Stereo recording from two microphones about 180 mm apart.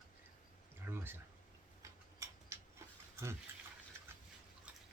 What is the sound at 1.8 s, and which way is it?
Tick-tock, 15° right (ahead or behind).